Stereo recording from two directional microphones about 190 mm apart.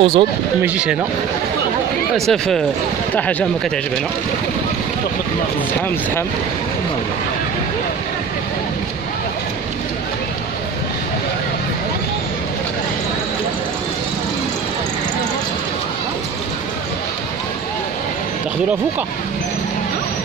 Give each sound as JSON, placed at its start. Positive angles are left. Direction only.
{"t": 0.0, "sound": "speech", "side_deg": -30}
{"t": 0.6, "sound": "speech", "side_deg": -5}
{"t": 2.1, "sound": "speech", "side_deg": 0}